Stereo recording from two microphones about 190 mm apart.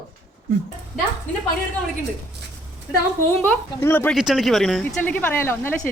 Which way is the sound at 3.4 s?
10° left (ahead or behind).